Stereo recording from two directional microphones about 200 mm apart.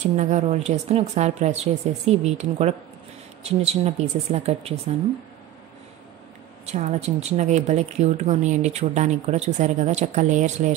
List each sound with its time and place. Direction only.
0.0 s speech: 35° right (ahead or behind)
6.6 s speech: 35° right (ahead or behind)